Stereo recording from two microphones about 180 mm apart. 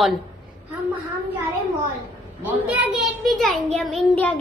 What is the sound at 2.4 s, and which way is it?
A child's voice, 5° right (ahead or behind).